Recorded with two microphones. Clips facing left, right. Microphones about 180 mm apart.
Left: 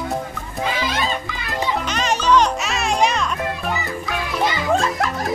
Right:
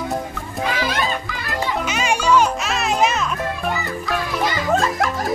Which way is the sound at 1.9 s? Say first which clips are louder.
Even; 10° right (ahead or behind).